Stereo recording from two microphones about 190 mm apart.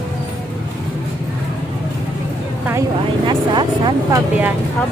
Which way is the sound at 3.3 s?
25° right (ahead or behind).